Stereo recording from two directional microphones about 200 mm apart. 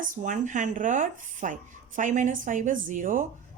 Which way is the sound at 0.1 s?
40° right (ahead or behind).